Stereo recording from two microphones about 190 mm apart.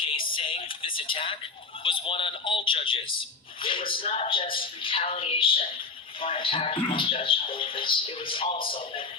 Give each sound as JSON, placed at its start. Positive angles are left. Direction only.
{"t": 0.0, "sound": "music", "side_deg": 25}
{"t": 1.8, "sound": "speech", "side_deg": 30}